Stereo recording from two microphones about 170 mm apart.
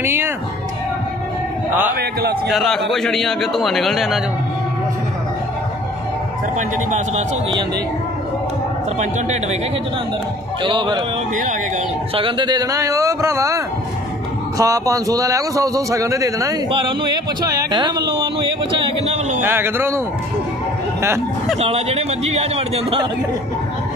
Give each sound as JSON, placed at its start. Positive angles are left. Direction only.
{"t": 0.0, "sound": "speech", "side_deg": -15}
{"t": 1.7, "sound": "speech", "side_deg": -10}
{"t": 2.0, "sound": "a man's voice", "side_deg": -70}
{"t": 2.5, "sound": "a man's voice", "side_deg": 0}
{"t": 9.0, "sound": "a man's voice", "side_deg": -40}
{"t": 10.6, "sound": "a man's voice", "side_deg": -30}
{"t": 12.2, "sound": "a man's voice", "side_deg": -30}
{"t": 14.6, "sound": "a man's voice", "side_deg": -20}
{"t": 19.4, "sound": "speech", "side_deg": -15}
{"t": 21.5, "sound": "a man's voice", "side_deg": -35}